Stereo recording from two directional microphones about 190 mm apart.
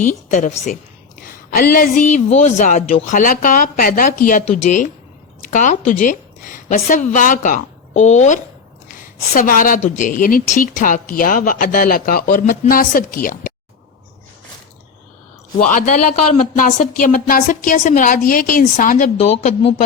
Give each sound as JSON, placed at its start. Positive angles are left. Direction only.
{"t": 0.0, "sound": "a woman's voice", "side_deg": 40}
{"t": 15.6, "sound": "a woman's voice", "side_deg": 45}